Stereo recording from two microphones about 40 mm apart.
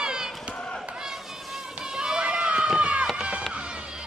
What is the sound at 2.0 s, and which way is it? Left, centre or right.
Run, right.